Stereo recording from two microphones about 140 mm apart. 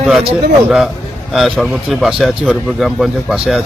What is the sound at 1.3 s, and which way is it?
Speech, centre (ahead or behind).